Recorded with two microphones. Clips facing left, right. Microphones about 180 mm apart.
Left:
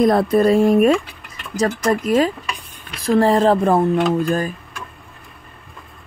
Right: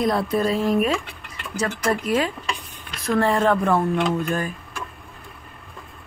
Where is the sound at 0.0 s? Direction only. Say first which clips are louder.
Left 7 dB; 50° left (ahead or behind); by 4.5 s 35° left (ahead or behind).